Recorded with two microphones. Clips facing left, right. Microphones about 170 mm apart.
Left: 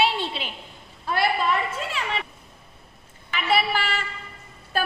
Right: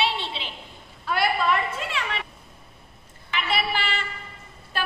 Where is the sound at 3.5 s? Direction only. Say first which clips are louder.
Left 5 dB; 40° left (ahead or behind).